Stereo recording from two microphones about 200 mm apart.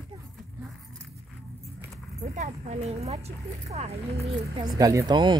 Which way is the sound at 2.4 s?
35° right (ahead or behind).